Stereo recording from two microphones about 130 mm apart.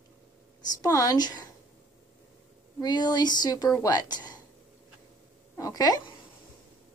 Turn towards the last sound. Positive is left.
turn(degrees=30)  # may be behind; listen again after turning